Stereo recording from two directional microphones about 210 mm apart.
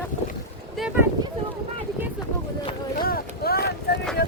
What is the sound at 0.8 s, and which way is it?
Speech, 5° right (ahead or behind).